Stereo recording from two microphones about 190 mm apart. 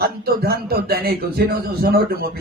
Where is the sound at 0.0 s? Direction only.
55° right (ahead or behind).